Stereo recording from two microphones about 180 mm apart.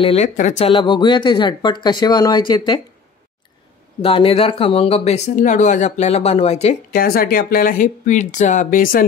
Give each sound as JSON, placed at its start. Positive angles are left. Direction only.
{"t": 0.0, "sound": "speech", "side_deg": 35}
{"t": 4.0, "sound": "speech", "side_deg": 30}
{"t": 6.9, "sound": "speech", "side_deg": 55}